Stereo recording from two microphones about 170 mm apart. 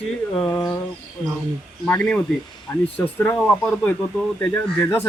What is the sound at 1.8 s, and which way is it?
A man's voice, 5° left (ahead or behind).